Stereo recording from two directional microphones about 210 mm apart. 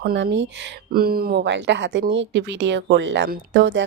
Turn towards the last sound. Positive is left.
turn(degrees=-55)  # may be behind; listen again after turning